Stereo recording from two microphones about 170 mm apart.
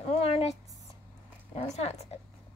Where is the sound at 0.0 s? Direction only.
35° left (ahead or behind).